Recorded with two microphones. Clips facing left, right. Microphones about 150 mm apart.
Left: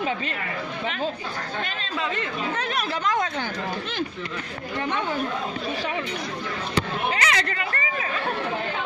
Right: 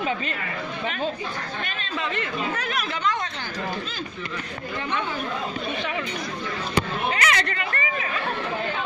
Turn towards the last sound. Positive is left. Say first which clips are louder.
# even
turn(degrees=25)  # may be behind; listen again after turning